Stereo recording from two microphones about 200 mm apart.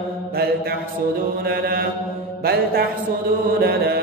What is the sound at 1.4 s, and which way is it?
Mantra, 50° right (ahead or behind).